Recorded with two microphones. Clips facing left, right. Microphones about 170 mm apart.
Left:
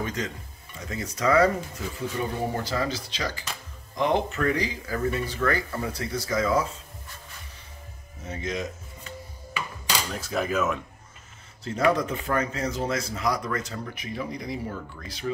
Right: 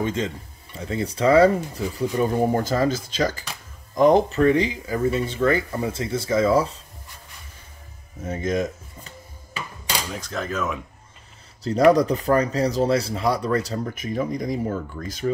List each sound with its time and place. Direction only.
0.0 s speech: 25° right (ahead or behind)
2.0 s speech: 45° right (ahead or behind)
4.4 s speech: 25° right (ahead or behind)
8.3 s speech: 50° right (ahead or behind)
10.0 s speech: 5° left (ahead or behind)
11.6 s speech: 35° right (ahead or behind)